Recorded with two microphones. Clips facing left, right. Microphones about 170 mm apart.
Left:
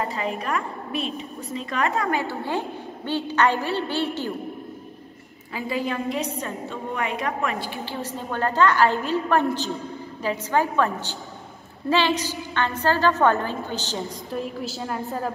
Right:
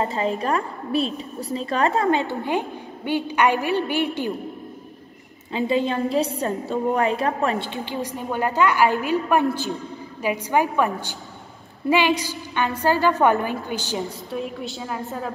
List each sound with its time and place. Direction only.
0.0 s a woman's voice: 30° right (ahead or behind); by 4.3 s 15° right (ahead or behind)
5.5 s a woman's voice: 25° right (ahead or behind)
14.3 s a woman's voice: centre (ahead or behind)